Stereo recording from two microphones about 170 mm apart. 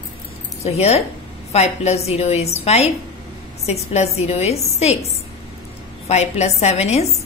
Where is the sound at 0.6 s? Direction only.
40° left (ahead or behind).